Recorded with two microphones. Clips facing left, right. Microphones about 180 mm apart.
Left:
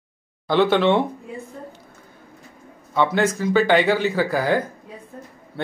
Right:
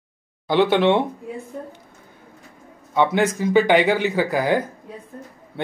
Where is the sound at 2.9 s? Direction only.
15° right (ahead or behind).